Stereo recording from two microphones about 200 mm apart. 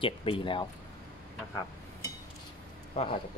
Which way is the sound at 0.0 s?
25° left (ahead or behind).